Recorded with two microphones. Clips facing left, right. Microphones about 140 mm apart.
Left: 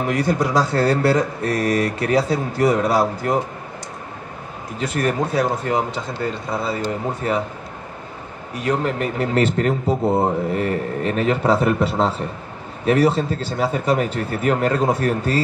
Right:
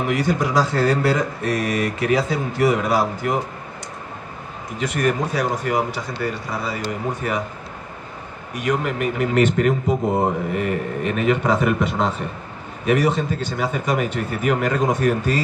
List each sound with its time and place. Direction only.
0.0 s speech: 30° left (ahead or behind)
4.7 s speech: 30° left (ahead or behind)
8.5 s speech: 35° left (ahead or behind)